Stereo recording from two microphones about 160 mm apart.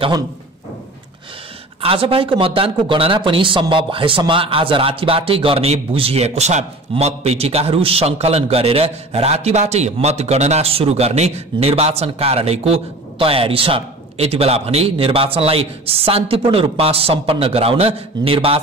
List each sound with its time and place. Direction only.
1.8 s speech: 35° right (ahead or behind)